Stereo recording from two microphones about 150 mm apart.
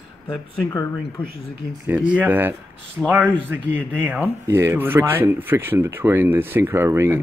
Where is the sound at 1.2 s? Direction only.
35° left (ahead or behind).